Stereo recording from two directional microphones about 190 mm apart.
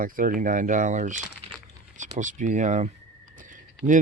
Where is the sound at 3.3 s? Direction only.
45° right (ahead or behind).